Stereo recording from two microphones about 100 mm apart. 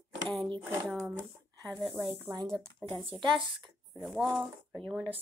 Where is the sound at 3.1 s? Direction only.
50° right (ahead or behind).